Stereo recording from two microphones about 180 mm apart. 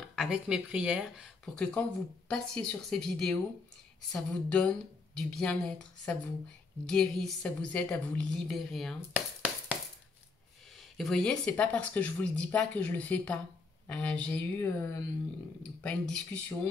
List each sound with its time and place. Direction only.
0.1 s speech: 5° right (ahead or behind)
9.1 s a sound: 10° right (ahead or behind)
11.0 s speech: centre (ahead or behind)
15.8 s speech: 5° left (ahead or behind)